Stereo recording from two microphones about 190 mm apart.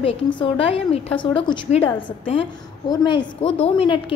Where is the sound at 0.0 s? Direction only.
30° left (ahead or behind).